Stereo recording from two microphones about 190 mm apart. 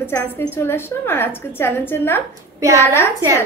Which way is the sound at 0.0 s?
10° left (ahead or behind).